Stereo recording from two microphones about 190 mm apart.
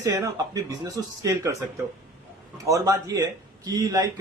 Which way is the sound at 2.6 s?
15° right (ahead or behind).